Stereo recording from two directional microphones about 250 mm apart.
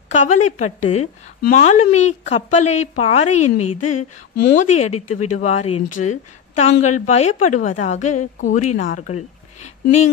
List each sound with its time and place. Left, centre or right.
0.1 s a woman's voice: left
8.2 s a woman's voice: left
8.7 s speech: left